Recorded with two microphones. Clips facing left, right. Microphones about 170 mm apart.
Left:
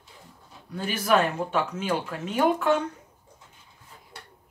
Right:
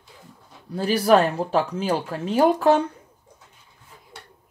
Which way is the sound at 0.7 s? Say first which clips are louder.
Right 6 dB; 35° right (ahead or behind).